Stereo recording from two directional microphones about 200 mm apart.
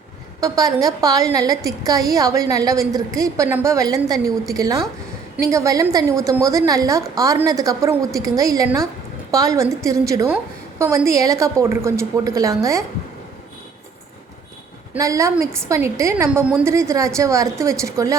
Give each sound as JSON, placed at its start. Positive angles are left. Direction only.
{"t": 0.3, "sound": "a woman's voice", "side_deg": -20}
{"t": 14.9, "sound": "a woman's voice", "side_deg": -15}